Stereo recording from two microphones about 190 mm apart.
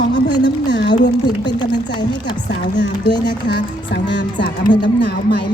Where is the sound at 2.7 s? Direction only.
65° left (ahead or behind).